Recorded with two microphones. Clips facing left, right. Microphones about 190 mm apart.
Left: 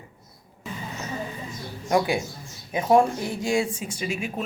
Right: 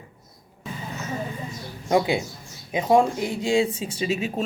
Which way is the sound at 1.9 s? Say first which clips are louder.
Right 1 dB; 20° right (ahead or behind).